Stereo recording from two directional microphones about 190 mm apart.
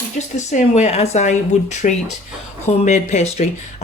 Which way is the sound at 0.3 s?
40° left (ahead or behind).